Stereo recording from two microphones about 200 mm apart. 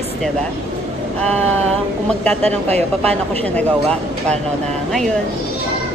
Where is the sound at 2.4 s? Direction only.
35° right (ahead or behind).